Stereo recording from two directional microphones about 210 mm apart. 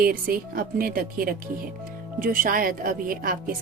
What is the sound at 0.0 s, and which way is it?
A woman's voice, 45° right (ahead or behind).